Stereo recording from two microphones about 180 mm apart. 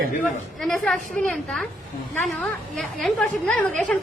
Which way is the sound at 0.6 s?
Centre (ahead or behind).